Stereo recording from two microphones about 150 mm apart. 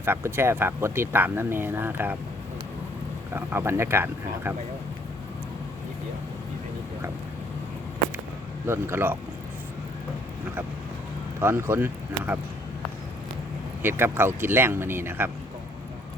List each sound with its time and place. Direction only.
0.0 s speech: 15° right (ahead or behind)
3.3 s speech: 15° right (ahead or behind)
8.6 s speech: 15° right (ahead or behind)
11.3 s speech: 15° right (ahead or behind)
13.8 s speech: 15° right (ahead or behind)